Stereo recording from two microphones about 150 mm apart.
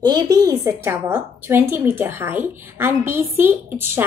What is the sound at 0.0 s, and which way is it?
A woman's voice, 25° right (ahead or behind).